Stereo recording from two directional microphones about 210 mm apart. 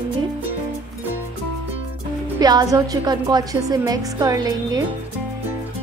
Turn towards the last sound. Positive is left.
turn(degrees=-15)  # may be behind; listen again after turning